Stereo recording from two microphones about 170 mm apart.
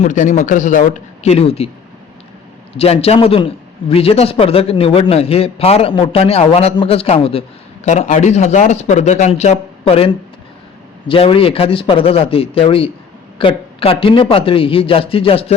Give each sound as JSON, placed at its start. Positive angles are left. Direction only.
{"t": 0.0, "sound": "a man's voice", "side_deg": 45}
{"t": 2.7, "sound": "a man's voice", "side_deg": 35}
{"t": 7.9, "sound": "a man's voice", "side_deg": 45}
{"t": 11.1, "sound": "a man's voice", "side_deg": 30}